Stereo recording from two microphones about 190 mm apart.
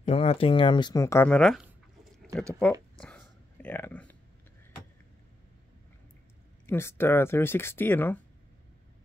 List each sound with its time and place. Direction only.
0.0 s speech: 30° left (ahead or behind); by 1.7 s centre (ahead or behind)
2.6 s a sound: 5° left (ahead or behind)
6.6 s speech: 10° left (ahead or behind)